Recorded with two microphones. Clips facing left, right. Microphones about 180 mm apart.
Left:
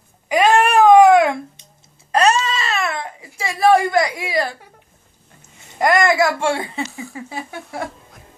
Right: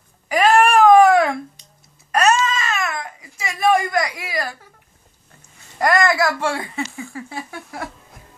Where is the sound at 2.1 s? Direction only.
30° left (ahead or behind).